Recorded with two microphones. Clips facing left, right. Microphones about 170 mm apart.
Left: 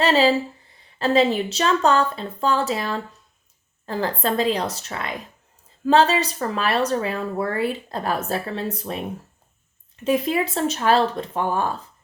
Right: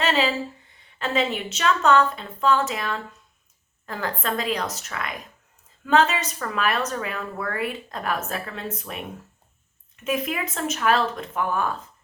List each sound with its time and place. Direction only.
0.0 s speech: 35° left (ahead or behind)